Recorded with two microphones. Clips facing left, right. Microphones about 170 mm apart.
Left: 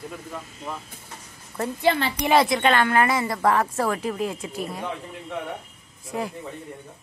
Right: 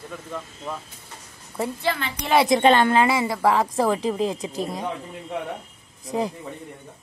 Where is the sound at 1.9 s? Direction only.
20° left (ahead or behind).